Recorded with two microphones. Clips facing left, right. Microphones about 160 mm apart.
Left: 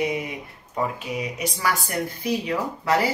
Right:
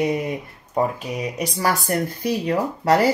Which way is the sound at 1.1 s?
40° right (ahead or behind).